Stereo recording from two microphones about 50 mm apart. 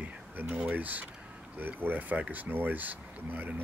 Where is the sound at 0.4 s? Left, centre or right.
Right.